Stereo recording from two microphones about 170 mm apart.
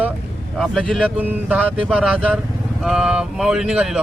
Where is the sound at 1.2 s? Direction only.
10° right (ahead or behind).